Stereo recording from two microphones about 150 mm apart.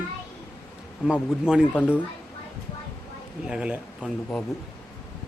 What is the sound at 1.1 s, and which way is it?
Speech, 5° right (ahead or behind).